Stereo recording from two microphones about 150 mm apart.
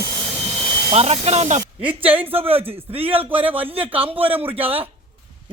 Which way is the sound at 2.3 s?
40° right (ahead or behind).